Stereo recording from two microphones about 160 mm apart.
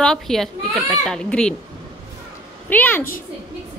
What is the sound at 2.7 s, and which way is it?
Speech, 10° left (ahead or behind).